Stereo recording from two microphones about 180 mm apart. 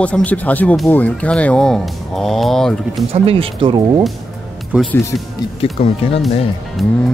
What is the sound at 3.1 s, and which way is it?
Speech, 30° right (ahead or behind).